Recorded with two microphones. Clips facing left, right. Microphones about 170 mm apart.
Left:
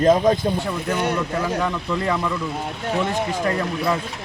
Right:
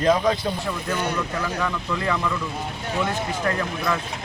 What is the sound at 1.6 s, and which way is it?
Speech, 20° left (ahead or behind).